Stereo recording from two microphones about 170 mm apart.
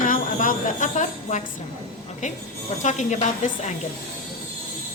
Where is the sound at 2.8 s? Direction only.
45° left (ahead or behind).